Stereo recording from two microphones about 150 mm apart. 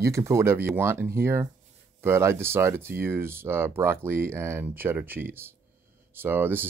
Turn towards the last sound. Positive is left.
turn(degrees=-15)  # may be behind; listen again after turning